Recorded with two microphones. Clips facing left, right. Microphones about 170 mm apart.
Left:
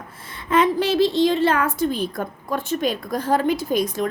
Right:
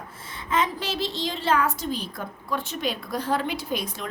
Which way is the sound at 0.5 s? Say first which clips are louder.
Left 8 dB; 60° left (ahead or behind).